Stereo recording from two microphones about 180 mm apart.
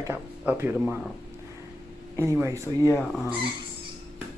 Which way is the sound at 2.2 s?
15° right (ahead or behind).